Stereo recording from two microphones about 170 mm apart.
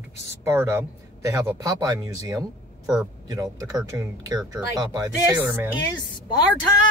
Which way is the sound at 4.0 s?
20° right (ahead or behind).